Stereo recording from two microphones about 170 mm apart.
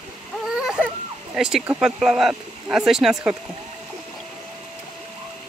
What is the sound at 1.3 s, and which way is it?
Speech, 5° right (ahead or behind).